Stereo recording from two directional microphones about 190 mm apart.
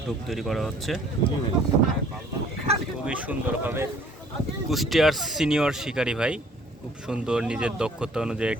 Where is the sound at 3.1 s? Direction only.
10° right (ahead or behind).